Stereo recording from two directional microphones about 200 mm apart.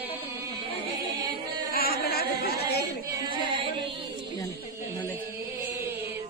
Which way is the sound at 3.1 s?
20° right (ahead or behind).